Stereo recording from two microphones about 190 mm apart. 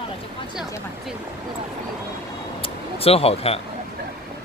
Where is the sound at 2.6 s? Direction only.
30° left (ahead or behind).